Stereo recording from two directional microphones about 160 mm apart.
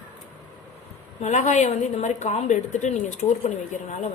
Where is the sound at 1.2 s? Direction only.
45° left (ahead or behind).